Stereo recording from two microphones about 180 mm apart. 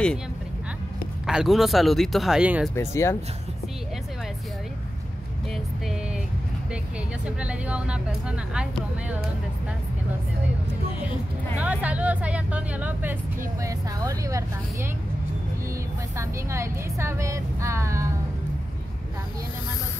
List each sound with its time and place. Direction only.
1.2 s speech: centre (ahead or behind)
2.7 s speech: 15° left (ahead or behind)
7.2 s speech: 5° right (ahead or behind)
11.6 s a woman's voice: 10° right (ahead or behind)
16.2 s a woman's voice: 15° right (ahead or behind)